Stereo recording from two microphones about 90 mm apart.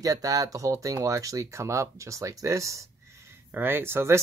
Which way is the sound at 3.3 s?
20° right (ahead or behind).